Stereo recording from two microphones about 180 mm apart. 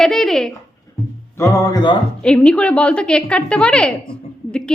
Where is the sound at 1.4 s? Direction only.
20° left (ahead or behind).